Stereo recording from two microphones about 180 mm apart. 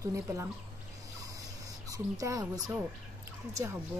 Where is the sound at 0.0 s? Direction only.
15° right (ahead or behind).